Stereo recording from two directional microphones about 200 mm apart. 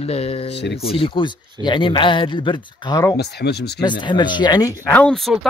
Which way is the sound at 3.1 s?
55° left (ahead or behind).